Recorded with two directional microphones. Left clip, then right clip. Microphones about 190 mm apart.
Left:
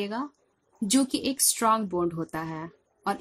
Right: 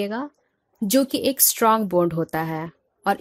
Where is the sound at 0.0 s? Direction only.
30° right (ahead or behind).